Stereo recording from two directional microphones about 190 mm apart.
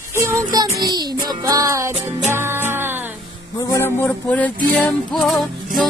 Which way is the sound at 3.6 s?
15° left (ahead or behind).